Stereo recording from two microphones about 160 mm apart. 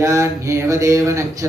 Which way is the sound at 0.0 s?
20° right (ahead or behind).